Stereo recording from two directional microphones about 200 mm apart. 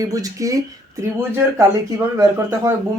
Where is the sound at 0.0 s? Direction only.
15° right (ahead or behind).